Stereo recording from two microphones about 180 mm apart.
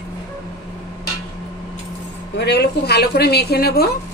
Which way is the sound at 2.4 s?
65° left (ahead or behind).